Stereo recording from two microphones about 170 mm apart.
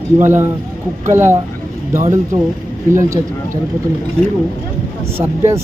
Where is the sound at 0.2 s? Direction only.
15° right (ahead or behind).